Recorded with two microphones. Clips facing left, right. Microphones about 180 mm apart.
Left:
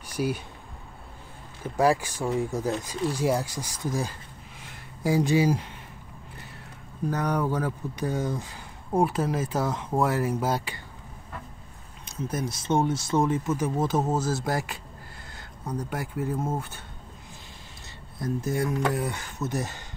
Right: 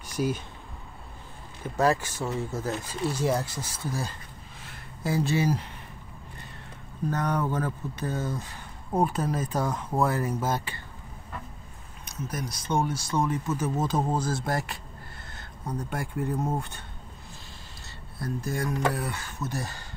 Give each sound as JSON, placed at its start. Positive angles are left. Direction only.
{"t": 0.0, "sound": "a sound", "side_deg": 10}
{"t": 1.6, "sound": "speech", "side_deg": 10}
{"t": 7.1, "sound": "speech", "side_deg": 10}
{"t": 12.0, "sound": "speech", "side_deg": 25}
{"t": 13.7, "sound": "speech", "side_deg": 5}
{"t": 15.8, "sound": "speech", "side_deg": 10}
{"t": 18.2, "sound": "speech", "side_deg": 20}